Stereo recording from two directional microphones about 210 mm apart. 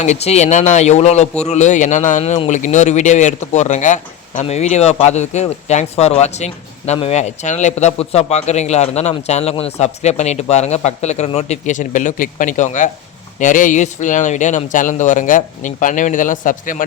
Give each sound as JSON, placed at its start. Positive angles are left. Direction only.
{"t": 0.0, "sound": "a man's voice", "side_deg": 30}